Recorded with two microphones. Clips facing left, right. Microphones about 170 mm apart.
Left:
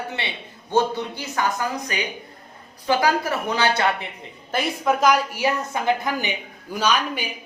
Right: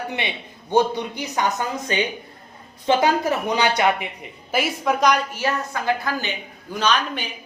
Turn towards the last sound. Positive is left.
turn(degrees=10)  # may be behind; listen again after turning